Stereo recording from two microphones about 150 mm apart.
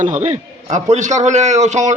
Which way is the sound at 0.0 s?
55° right (ahead or behind).